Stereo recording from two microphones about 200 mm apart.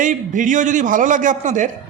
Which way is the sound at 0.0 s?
40° right (ahead or behind).